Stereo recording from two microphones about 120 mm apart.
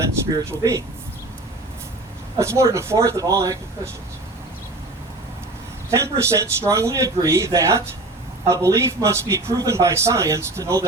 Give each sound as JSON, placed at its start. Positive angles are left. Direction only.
{"t": 0.3, "sound": "a man's voice", "side_deg": -25}
{"t": 2.4, "sound": "a man's voice", "side_deg": -25}
{"t": 5.9, "sound": "a man's voice", "side_deg": -25}